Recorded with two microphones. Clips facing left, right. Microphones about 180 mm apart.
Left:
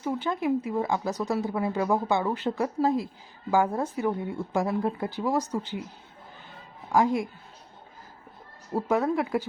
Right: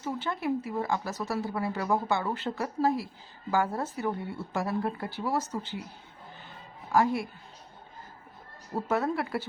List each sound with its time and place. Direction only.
0.0 s speech: 15° left (ahead or behind)
6.9 s speech: 15° left (ahead or behind)
8.7 s speech: 10° left (ahead or behind)